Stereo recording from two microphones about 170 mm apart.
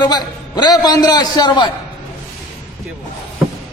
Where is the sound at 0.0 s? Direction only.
25° left (ahead or behind).